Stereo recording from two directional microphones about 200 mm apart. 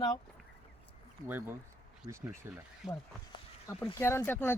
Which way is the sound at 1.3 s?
10° right (ahead or behind).